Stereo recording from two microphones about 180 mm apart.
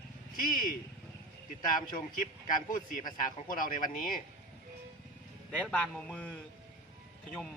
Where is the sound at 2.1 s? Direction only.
50° left (ahead or behind).